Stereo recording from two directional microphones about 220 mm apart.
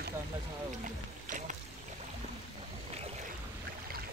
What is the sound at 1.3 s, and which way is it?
Rowboat, 35° right (ahead or behind).